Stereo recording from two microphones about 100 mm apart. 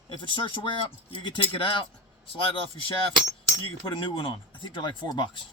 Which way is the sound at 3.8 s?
55° left (ahead or behind).